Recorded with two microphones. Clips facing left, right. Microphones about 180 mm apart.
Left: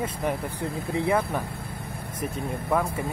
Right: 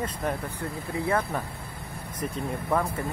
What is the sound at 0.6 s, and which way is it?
Speech, 15° left (ahead or behind).